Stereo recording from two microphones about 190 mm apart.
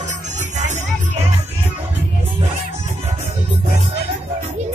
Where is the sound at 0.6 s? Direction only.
40° right (ahead or behind).